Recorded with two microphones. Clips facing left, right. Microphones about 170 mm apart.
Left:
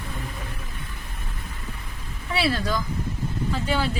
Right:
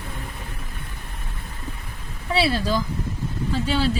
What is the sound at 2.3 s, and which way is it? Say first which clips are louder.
Speech: right 3 dB; 30° right (ahead or behind).